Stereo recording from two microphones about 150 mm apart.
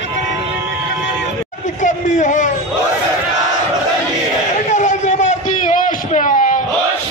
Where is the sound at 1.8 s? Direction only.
55° left (ahead or behind).